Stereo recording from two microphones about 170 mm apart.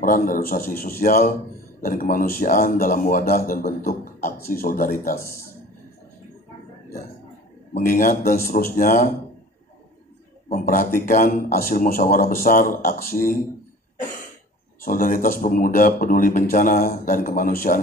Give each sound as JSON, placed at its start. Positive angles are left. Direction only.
{"t": 0.0, "sound": "speech", "side_deg": 55}
{"t": 5.2, "sound": "speech", "side_deg": 15}
{"t": 7.7, "sound": "speech", "side_deg": 55}
{"t": 10.5, "sound": "speech", "side_deg": 55}
{"t": 14.8, "sound": "speech", "side_deg": 55}